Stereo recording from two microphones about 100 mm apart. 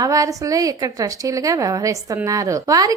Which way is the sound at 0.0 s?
35° right (ahead or behind).